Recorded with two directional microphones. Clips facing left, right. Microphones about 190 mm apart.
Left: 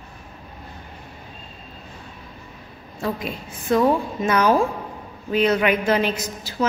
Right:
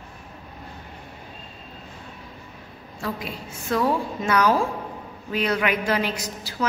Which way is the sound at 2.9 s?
20° left (ahead or behind).